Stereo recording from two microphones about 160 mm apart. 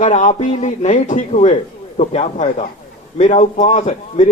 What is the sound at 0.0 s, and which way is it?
A man's voice, 50° left (ahead or behind).